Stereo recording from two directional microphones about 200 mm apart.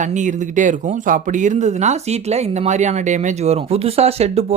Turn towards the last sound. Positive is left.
turn(degrees=-30)  # may be behind; listen again after turning